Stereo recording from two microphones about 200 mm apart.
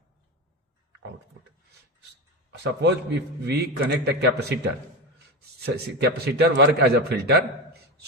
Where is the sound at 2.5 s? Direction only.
55° right (ahead or behind).